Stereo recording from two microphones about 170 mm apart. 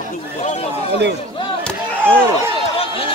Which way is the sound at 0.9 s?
85° right.